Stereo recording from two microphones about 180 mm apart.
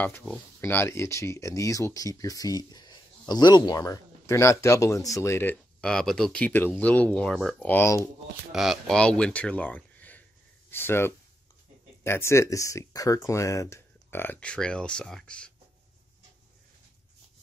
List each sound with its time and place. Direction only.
0.2 s speech: 5° left (ahead or behind)
8.5 s speech: centre (ahead or behind)